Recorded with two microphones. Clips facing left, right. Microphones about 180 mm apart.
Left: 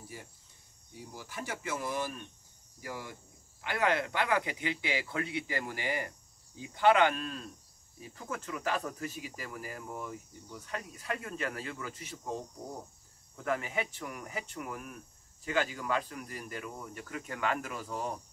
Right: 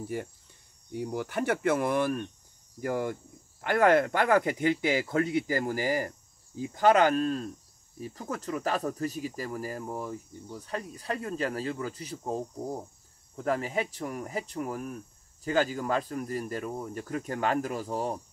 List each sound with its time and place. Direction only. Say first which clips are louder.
0.9 s speech: right 12 dB; 65° right (ahead or behind); by 12.4 s 35° right (ahead or behind)
13.4 s speech: right 4 dB; 35° right (ahead or behind)